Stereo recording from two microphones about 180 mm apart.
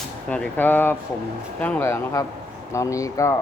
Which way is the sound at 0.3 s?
5° left (ahead or behind).